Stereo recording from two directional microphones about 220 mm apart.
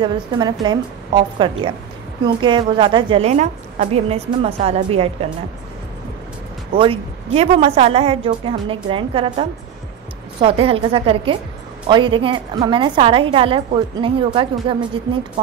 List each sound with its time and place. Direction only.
0.0 s a woman's voice: 20° right (ahead or behind)
6.8 s a woman's voice: 25° right (ahead or behind)